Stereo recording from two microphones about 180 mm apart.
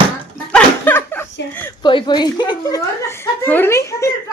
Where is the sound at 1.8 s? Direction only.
25° left (ahead or behind).